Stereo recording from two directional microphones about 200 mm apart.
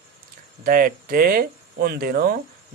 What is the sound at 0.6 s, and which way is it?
Speech, 45° right (ahead or behind).